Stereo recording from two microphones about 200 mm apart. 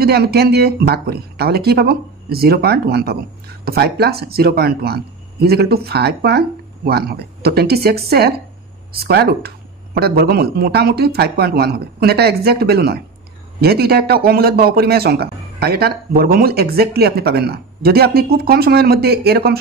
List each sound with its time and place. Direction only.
0.0 s speech: 50° right (ahead or behind)